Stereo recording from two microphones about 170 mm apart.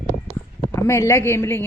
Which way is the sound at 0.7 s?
15° left (ahead or behind).